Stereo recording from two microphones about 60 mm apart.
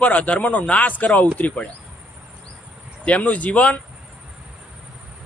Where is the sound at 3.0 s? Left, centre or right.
Left.